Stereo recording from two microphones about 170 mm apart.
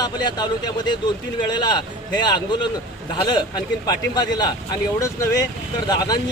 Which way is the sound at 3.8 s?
25° left (ahead or behind).